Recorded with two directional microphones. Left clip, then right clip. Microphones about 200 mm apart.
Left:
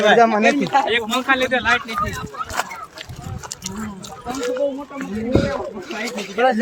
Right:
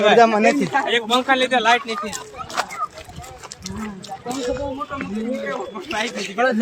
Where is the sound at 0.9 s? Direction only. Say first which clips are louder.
Right 1 dB; 30° right (ahead or behind).